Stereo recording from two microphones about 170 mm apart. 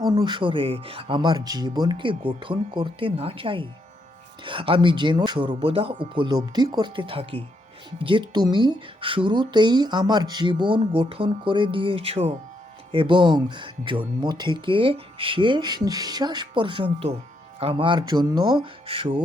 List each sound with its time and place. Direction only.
0.0 s speech: 25° right (ahead or behind)